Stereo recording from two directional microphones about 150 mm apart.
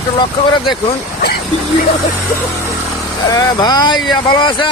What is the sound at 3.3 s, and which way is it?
Speech, 25° left (ahead or behind).